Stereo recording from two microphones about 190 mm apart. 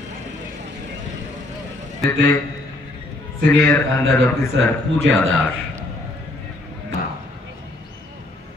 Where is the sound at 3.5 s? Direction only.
15° left (ahead or behind).